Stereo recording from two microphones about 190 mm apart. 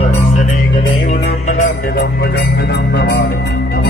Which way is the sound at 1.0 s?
55° left (ahead or behind).